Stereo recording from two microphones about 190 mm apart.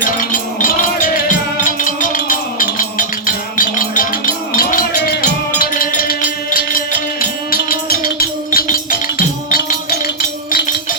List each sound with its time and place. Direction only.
0.0 s music: 45° left (ahead or behind)
3.6 s rattle: 45° left (ahead or behind)